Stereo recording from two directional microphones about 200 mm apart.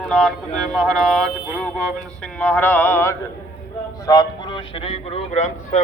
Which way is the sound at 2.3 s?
5° left (ahead or behind).